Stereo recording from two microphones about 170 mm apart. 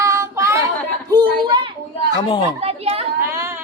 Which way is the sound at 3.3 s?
15° right (ahead or behind).